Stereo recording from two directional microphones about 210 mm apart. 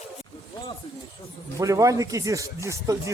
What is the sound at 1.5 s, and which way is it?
Speech, 15° right (ahead or behind).